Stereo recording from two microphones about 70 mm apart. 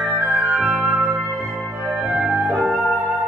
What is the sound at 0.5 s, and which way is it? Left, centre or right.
Flute, centre.